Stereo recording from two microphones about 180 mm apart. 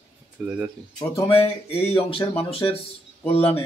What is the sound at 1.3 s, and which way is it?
Speech, 35° left (ahead or behind).